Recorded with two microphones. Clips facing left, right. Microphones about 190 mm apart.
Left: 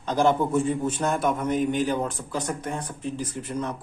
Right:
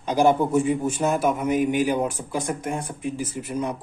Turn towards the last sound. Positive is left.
turn(degrees=-10)  # may be behind; listen again after turning